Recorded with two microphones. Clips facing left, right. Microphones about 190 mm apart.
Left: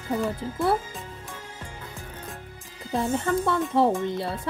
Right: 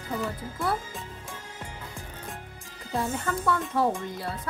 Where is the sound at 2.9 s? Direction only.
25° left (ahead or behind).